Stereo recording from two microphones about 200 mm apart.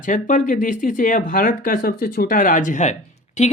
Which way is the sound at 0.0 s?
40° left (ahead or behind).